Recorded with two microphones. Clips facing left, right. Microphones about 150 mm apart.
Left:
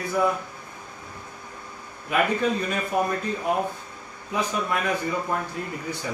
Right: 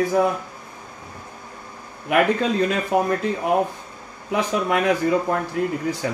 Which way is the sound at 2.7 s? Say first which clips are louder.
Right 4 dB; 85° right.